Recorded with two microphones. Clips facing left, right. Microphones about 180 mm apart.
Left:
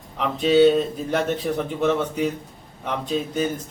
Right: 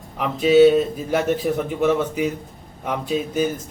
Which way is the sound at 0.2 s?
5° right (ahead or behind).